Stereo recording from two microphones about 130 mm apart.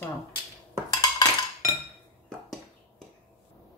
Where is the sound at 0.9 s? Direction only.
30° left (ahead or behind).